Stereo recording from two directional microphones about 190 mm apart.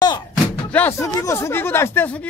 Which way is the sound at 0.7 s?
10° left (ahead or behind).